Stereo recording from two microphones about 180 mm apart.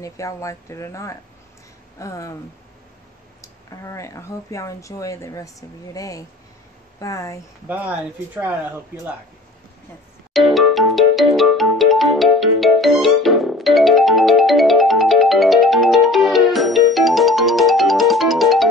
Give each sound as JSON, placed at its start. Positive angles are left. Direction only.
{"t": 0.0, "sound": "speech", "side_deg": 15}
{"t": 3.3, "sound": "speech", "side_deg": 15}
{"t": 7.6, "sound": "speech", "side_deg": -10}
{"t": 10.3, "sound": "music", "side_deg": 0}